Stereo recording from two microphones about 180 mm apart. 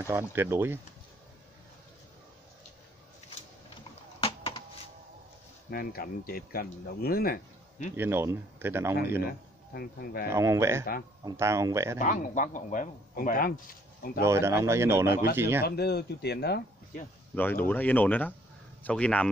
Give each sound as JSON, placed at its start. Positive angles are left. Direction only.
{"t": 0.0, "sound": "speech", "side_deg": -15}
{"t": 4.2, "sound": "a sound", "side_deg": 30}
{"t": 5.7, "sound": "speech", "side_deg": 55}
{"t": 7.9, "sound": "speech", "side_deg": -15}
{"t": 9.8, "sound": "speech", "side_deg": 55}
{"t": 10.3, "sound": "speech", "side_deg": -15}
{"t": 12.0, "sound": "speech", "side_deg": 45}
{"t": 14.2, "sound": "speech", "side_deg": -15}
{"t": 15.6, "sound": "speech", "side_deg": 60}
{"t": 17.4, "sound": "speech", "side_deg": 10}